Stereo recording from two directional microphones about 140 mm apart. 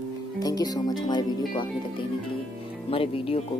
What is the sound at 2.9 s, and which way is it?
Speech, 40° left (ahead or behind).